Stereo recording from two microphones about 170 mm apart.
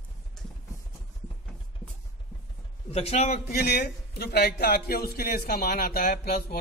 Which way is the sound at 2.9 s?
40° left (ahead or behind).